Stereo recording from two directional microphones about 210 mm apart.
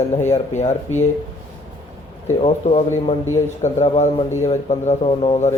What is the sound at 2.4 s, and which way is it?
Speech, 30° left (ahead or behind).